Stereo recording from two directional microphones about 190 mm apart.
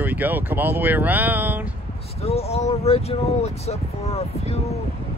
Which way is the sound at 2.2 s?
30° left (ahead or behind).